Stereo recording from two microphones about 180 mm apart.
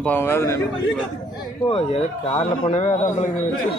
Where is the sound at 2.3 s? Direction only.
35° left (ahead or behind).